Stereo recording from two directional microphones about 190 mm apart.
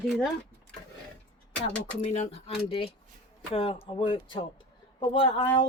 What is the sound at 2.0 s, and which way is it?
A woman's voice, 35° left (ahead or behind).